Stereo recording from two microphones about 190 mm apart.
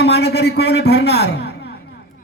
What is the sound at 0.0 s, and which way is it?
A man's voice, 60° left (ahead or behind).